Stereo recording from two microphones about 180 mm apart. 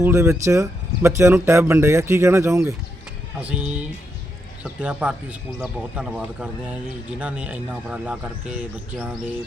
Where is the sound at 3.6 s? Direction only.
5° right (ahead or behind).